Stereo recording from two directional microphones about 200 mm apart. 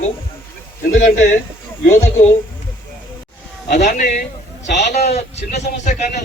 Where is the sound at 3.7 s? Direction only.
40° left (ahead or behind).